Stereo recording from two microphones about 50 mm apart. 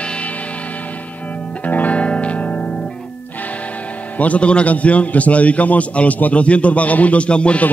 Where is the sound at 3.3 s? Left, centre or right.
Left.